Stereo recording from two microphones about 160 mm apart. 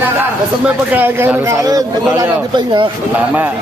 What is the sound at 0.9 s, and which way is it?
A man's voice, 10° right (ahead or behind).